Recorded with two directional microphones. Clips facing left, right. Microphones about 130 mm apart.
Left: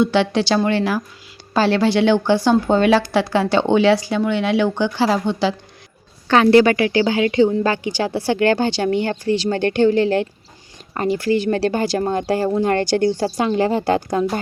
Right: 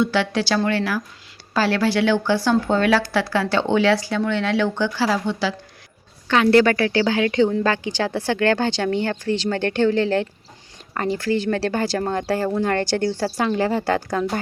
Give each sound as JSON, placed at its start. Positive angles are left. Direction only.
{"t": 0.0, "sound": "a woman's voice", "side_deg": 20}
{"t": 6.2, "sound": "a woman's voice", "side_deg": 35}
{"t": 6.5, "sound": "speech", "side_deg": 15}